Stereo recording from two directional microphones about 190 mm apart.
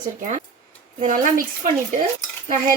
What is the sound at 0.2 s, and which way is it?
A woman's voice, 40° right (ahead or behind).